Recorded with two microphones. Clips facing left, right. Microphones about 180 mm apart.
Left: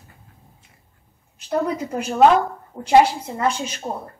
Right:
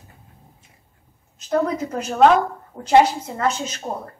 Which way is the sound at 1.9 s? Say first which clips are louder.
Left 1 dB; 10° left (ahead or behind).